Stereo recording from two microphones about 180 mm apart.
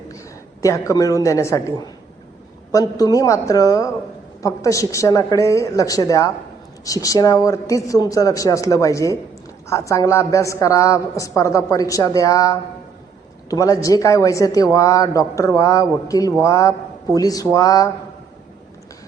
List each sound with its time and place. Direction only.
0.6 s a woman's voice: 20° left (ahead or behind)
2.7 s a woman's voice: 20° left (ahead or behind)